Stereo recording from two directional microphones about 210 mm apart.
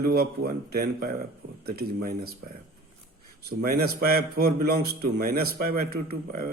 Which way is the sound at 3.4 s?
50° right (ahead or behind).